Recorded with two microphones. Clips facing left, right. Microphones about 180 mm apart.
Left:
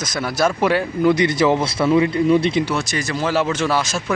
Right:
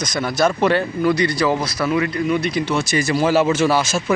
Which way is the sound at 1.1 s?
20° left (ahead or behind).